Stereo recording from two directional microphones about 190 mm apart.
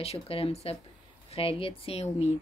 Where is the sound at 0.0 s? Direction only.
30° left (ahead or behind).